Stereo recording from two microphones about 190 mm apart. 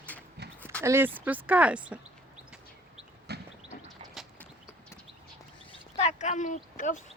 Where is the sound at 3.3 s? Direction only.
60° right (ahead or behind).